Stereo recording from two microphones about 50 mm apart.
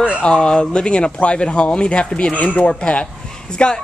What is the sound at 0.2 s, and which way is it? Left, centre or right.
Speech, centre.